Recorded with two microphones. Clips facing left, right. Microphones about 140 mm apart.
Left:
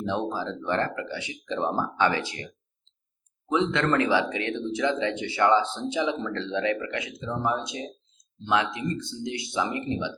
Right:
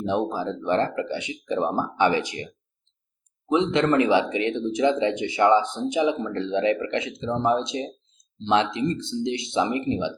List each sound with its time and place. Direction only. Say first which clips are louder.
0.0 s speech: right 4 dB; 15° right (ahead or behind)
3.5 s speech: right 4 dB; 20° right (ahead or behind)